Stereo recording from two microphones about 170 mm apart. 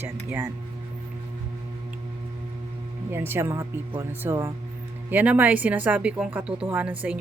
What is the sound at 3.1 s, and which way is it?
A woman's voice, 15° right (ahead or behind).